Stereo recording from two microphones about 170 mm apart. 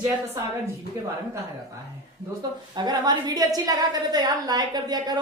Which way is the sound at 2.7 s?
25° right (ahead or behind).